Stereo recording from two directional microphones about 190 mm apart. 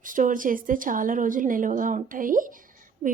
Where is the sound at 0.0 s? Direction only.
45° right (ahead or behind).